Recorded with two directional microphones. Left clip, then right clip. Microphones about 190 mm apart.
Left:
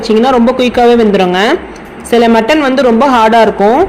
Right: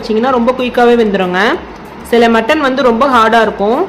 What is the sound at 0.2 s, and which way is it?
Speech, 20° left (ahead or behind).